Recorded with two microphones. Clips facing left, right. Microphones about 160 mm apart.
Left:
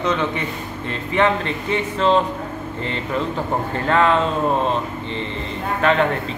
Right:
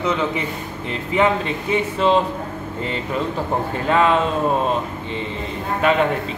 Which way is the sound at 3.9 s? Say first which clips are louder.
Even; 5° right (ahead or behind).